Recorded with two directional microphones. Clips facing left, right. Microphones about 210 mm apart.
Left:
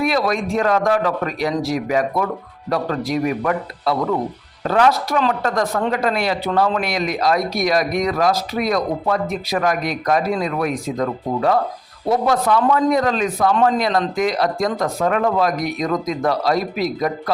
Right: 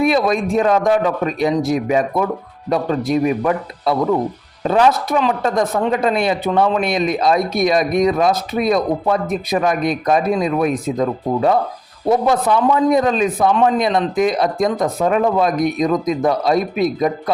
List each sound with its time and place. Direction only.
0.0 s speech: 20° right (ahead or behind)